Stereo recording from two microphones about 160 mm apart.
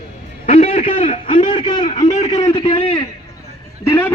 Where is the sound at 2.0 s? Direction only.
45° left (ahead or behind).